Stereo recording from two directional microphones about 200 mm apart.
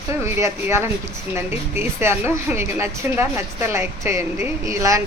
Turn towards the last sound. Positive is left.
turn(degrees=-15)  # may be behind; listen again after turning